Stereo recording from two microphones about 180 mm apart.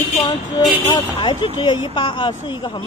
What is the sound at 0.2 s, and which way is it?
A woman's voice, 20° left (ahead or behind).